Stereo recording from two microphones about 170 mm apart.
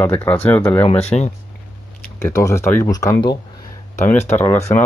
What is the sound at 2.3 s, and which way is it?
Speech, 15° left (ahead or behind).